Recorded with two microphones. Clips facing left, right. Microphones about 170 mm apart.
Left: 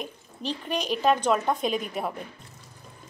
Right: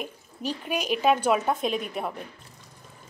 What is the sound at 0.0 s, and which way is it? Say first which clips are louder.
Speech: right 1 dB; 10° right (ahead or behind).